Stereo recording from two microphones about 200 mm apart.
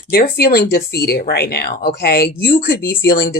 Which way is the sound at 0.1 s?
50° left (ahead or behind).